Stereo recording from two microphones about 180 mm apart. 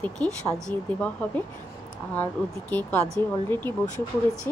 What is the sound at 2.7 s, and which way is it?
A woman's voice, 10° left (ahead or behind).